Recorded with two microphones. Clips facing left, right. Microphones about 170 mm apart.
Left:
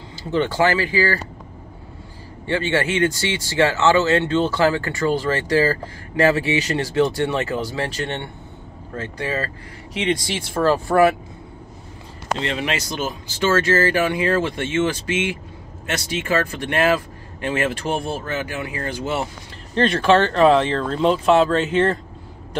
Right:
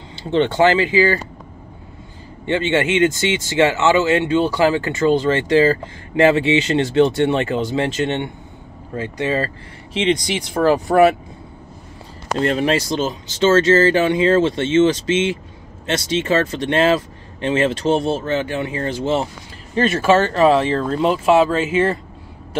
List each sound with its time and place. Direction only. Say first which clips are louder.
0.1 s speech: right 4 dB; 25° right (ahead or behind)
2.4 s speech: right 3 dB; 20° right (ahead or behind)
12.4 s speech: right 9 dB; 40° right (ahead or behind)
19.7 s speech: right 1 dB; 5° right (ahead or behind)